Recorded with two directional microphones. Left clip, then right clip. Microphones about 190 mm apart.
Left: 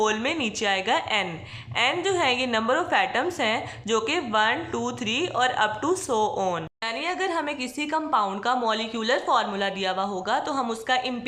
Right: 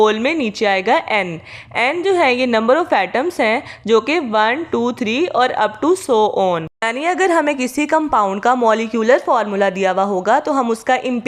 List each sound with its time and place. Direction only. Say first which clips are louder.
0.0 s a woman's voice: right 9 dB; 25° right (ahead or behind)
6.8 s a woman's voice: right 11 dB; 35° right (ahead or behind)